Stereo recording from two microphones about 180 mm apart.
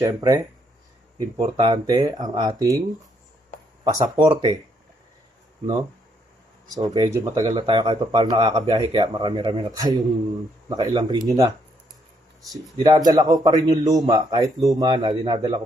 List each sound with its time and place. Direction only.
0.0 s speech: 20° right (ahead or behind)
1.4 s speech: 25° right (ahead or behind)
3.8 s speech: 20° right (ahead or behind)
6.7 s speech: 20° right (ahead or behind)
12.4 s speech: centre (ahead or behind)
12.9 s speech: 20° right (ahead or behind)